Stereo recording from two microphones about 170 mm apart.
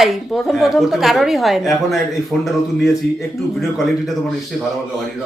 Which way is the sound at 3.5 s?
Centre (ahead or behind).